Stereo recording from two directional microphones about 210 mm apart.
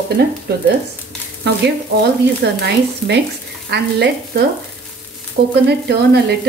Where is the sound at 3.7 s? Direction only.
55° right (ahead or behind).